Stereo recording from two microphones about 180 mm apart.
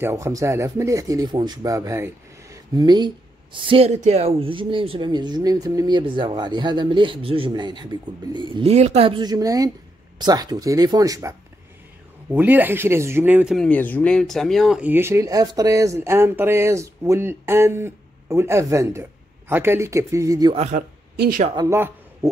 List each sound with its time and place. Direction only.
0.0 s speech: 15° right (ahead or behind)
13.7 s speech: 10° left (ahead or behind); by 20.5 s 20° right (ahead or behind)
20.5 s speech: 35° right (ahead or behind)
21.2 s speech: 55° right (ahead or behind)
21.5 s a woman's voice: 15° right (ahead or behind)